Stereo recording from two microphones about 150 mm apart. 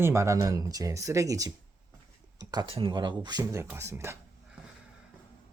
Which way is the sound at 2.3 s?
25° right (ahead or behind).